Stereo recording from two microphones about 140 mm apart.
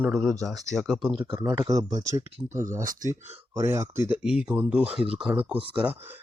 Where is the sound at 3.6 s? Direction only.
20° right (ahead or behind).